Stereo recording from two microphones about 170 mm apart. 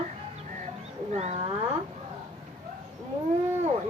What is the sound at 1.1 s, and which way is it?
Speech, 40° right (ahead or behind).